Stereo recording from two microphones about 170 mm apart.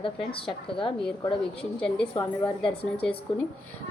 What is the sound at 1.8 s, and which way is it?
Speech, 5° left (ahead or behind).